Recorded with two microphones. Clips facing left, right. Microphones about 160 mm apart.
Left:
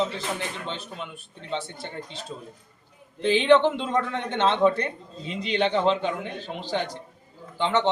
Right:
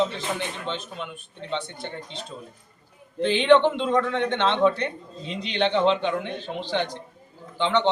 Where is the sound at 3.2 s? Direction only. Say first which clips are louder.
Right 1 dB; 5° left (ahead or behind).